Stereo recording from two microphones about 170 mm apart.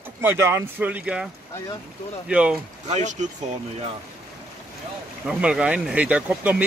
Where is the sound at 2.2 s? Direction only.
5° right (ahead or behind).